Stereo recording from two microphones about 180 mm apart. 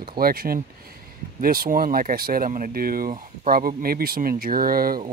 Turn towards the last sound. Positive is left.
turn(degrees=-55)  # may be behind; listen again after turning